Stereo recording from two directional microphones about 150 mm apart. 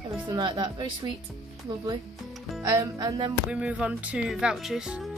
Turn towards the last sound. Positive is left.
turn(degrees=-5)  # may be behind; listen again after turning